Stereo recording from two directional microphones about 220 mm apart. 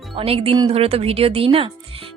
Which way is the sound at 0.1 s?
25° right (ahead or behind).